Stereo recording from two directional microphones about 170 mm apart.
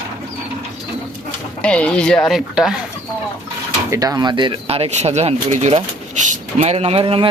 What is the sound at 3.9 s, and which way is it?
Speech, 20° right (ahead or behind).